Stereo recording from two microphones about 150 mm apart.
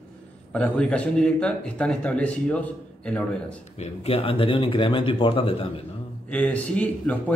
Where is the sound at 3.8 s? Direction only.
40° left (ahead or behind).